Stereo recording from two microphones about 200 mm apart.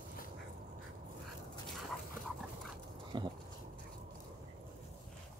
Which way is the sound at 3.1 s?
25° right (ahead or behind).